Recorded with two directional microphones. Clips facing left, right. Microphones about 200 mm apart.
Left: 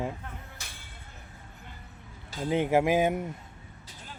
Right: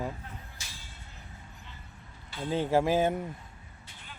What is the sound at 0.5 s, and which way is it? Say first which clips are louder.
Vehicle: left 2 dB; 60° left (ahead or behind).